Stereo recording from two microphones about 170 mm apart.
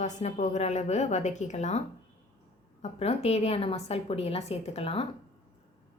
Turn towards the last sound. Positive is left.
turn(degrees=35)  # may be behind; listen again after turning